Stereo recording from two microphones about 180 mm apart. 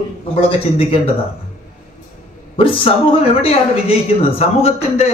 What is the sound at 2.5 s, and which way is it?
A man's voice, 30° left (ahead or behind).